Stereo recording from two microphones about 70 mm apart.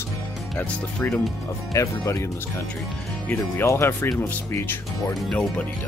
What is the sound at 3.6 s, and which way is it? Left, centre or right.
Speech, left.